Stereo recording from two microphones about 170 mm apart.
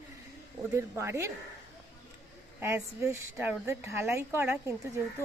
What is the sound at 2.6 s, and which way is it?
A woman's voice, 15° right (ahead or behind).